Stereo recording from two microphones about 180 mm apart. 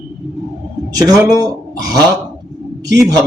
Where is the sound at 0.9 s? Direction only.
20° right (ahead or behind).